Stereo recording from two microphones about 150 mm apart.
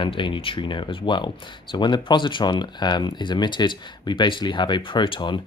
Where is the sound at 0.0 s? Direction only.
35° left (ahead or behind).